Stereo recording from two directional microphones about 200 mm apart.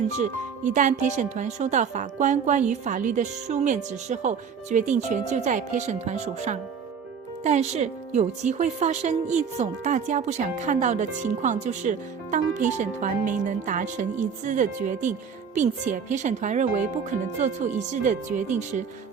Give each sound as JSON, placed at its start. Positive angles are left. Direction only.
{"t": 0.2, "sound": "speech", "side_deg": -40}